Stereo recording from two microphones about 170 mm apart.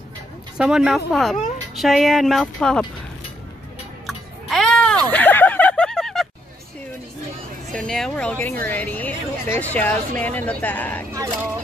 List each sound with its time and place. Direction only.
0.6 s speech: 5° right (ahead or behind)
4.0 s a sound: centre (ahead or behind)
7.7 s a woman's voice: 5° left (ahead or behind)